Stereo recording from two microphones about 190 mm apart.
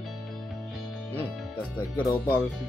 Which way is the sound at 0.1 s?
Centre (ahead or behind).